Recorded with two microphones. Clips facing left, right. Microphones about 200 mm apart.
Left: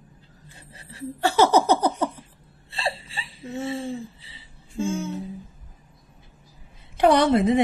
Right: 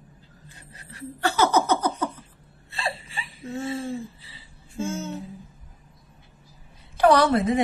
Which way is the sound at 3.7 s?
20° left (ahead or behind).